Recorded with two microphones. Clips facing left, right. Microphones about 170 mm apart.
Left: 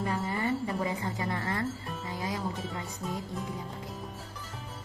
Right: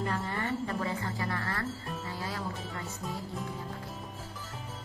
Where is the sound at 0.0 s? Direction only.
10° left (ahead or behind).